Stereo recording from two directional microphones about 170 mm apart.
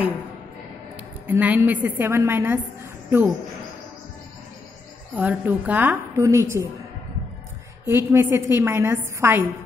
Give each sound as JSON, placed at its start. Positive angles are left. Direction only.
{"t": 1.2, "sound": "a woman's voice", "side_deg": -10}
{"t": 5.1, "sound": "a woman's voice", "side_deg": -10}
{"t": 7.8, "sound": "a woman's voice", "side_deg": -15}